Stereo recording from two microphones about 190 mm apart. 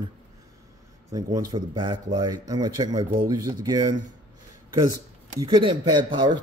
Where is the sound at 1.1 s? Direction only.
20° right (ahead or behind).